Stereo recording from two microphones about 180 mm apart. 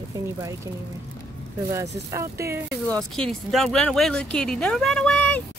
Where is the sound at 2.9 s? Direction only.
5° left (ahead or behind).